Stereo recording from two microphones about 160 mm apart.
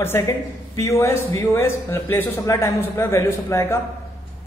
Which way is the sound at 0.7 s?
20° left (ahead or behind).